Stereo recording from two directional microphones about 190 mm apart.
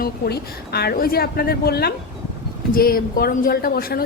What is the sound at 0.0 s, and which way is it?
A woman's voice, 55° left (ahead or behind).